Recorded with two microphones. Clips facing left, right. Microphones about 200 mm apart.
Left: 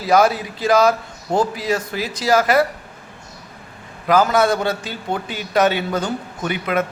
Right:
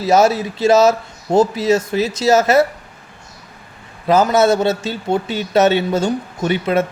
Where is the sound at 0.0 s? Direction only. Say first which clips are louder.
Right 2 dB; 25° right (ahead or behind).